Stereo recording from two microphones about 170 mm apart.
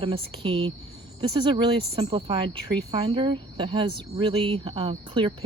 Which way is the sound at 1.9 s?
35° right (ahead or behind).